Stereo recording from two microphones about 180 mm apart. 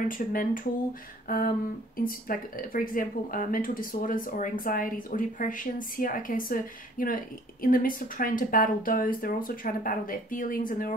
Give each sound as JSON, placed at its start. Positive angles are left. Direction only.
{"t": 0.1, "sound": "speech", "side_deg": 50}
{"t": 1.2, "sound": "a sound", "side_deg": 50}
{"t": 2.0, "sound": "speech", "side_deg": 50}